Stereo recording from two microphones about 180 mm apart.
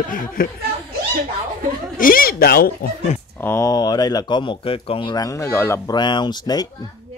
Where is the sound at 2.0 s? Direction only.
50° left (ahead or behind).